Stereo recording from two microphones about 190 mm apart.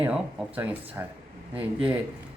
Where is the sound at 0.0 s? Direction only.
10° right (ahead or behind).